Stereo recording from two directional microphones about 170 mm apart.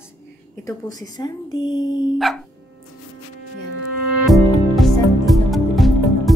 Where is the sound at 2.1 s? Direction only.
Centre (ahead or behind).